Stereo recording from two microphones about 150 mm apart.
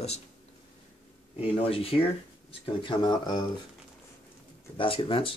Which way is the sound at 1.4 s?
40° left (ahead or behind).